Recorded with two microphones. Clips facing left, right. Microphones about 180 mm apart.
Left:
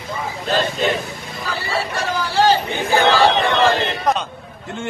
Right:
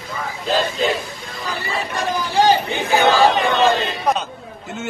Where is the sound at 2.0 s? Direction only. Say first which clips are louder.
Right 1 dB; 15° right (ahead or behind).